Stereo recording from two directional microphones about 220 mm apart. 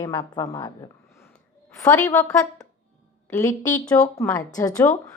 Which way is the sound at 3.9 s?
10° left (ahead or behind).